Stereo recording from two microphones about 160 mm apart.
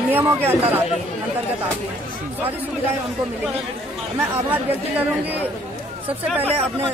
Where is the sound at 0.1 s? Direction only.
15° right (ahead or behind).